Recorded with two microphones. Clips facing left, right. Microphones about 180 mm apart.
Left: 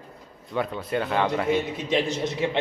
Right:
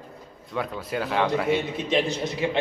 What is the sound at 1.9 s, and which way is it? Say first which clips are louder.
Speech: right 1 dB; 20° left (ahead or behind).